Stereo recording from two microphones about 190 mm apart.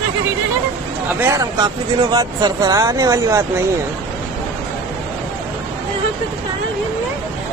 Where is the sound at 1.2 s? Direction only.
15° right (ahead or behind).